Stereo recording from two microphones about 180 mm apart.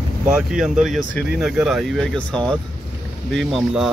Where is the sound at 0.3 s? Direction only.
5° right (ahead or behind).